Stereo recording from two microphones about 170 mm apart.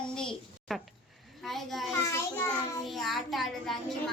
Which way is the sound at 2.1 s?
15° left (ahead or behind).